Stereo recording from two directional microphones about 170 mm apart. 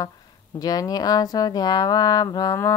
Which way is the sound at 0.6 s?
20° left (ahead or behind).